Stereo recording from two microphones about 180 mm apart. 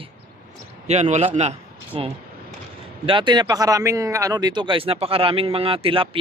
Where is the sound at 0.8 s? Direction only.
40° right (ahead or behind).